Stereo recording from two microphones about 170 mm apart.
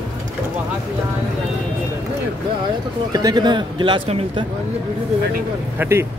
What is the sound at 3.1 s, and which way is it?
A man's voice, 25° right (ahead or behind).